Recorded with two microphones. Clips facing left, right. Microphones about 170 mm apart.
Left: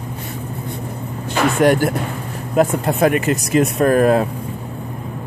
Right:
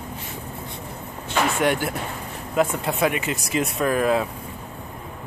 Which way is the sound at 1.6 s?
40° left (ahead or behind).